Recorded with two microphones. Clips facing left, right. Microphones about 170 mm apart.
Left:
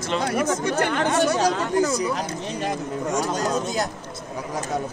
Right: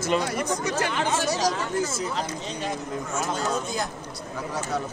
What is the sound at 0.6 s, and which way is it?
Speech, 60° left (ahead or behind).